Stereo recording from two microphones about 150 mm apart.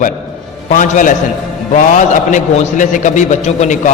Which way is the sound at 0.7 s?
60° left (ahead or behind).